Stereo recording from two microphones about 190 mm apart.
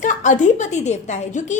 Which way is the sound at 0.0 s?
40° left (ahead or behind).